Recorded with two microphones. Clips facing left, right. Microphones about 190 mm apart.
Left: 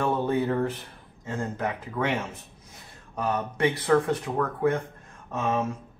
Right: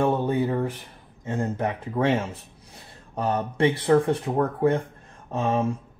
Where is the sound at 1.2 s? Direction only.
20° right (ahead or behind).